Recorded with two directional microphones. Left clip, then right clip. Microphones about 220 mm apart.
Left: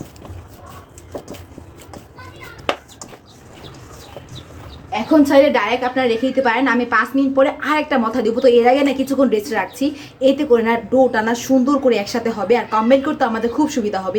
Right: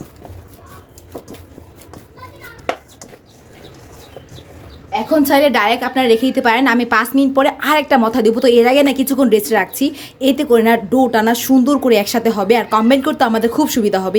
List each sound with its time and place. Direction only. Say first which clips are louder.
5.2 s a woman's voice: right 1 dB; 50° right (ahead or behind)